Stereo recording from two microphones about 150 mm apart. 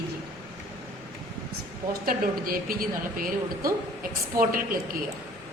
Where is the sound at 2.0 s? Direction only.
75° right (ahead or behind).